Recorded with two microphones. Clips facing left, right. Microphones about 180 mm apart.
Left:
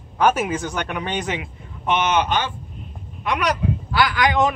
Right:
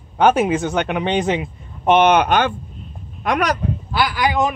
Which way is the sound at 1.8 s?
55° right (ahead or behind).